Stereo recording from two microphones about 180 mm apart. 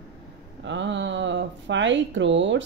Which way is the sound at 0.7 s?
90° right.